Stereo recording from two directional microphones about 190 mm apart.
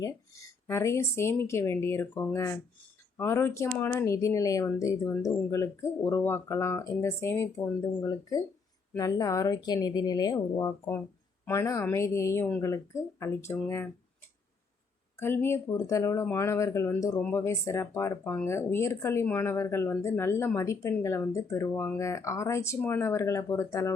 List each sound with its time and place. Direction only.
0.0 s speech: 15° left (ahead or behind)
15.2 s speech: 10° left (ahead or behind)